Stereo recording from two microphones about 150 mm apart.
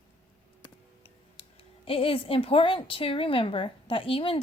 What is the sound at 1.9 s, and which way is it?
A woman's voice, 40° left (ahead or behind).